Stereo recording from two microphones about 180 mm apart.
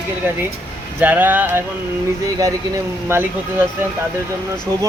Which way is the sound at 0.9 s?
10° right (ahead or behind).